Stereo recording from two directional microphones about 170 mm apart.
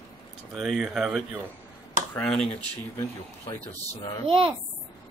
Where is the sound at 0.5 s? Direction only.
Centre (ahead or behind).